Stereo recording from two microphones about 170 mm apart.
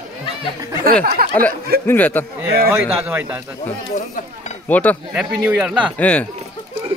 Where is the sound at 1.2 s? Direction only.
55° right (ahead or behind).